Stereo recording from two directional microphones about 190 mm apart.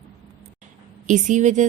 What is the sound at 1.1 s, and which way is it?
Speech, 40° right (ahead or behind).